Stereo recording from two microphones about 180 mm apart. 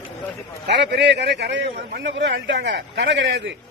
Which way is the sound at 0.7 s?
75° right (ahead or behind).